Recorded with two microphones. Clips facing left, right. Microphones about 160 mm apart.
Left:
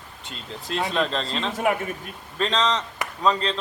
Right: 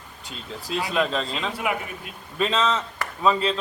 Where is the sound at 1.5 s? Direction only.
45° left (ahead or behind).